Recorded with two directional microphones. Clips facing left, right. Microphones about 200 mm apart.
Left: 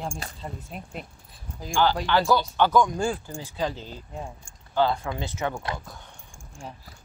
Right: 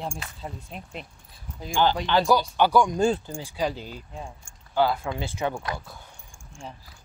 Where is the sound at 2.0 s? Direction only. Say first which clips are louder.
Right 1 dB; 15° right (ahead or behind).